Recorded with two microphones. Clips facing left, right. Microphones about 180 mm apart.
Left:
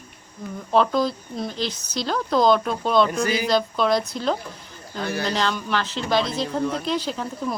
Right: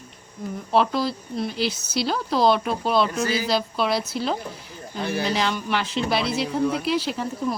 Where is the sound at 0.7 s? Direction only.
5° right (ahead or behind).